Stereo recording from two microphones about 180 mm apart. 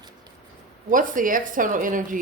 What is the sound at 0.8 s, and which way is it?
A woman's voice, 50° right (ahead or behind).